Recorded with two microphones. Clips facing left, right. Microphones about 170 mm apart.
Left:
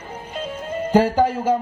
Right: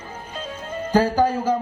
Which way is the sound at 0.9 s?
25° left (ahead or behind).